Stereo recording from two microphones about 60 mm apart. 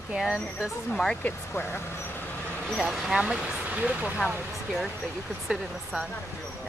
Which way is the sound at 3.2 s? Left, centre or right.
Centre.